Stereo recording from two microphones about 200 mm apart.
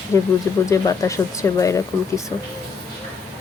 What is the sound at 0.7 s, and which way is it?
Speech, 15° left (ahead or behind).